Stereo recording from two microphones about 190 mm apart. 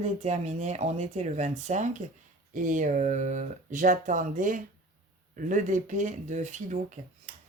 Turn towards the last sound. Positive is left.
turn(degrees=-40)  # may be behind; listen again after turning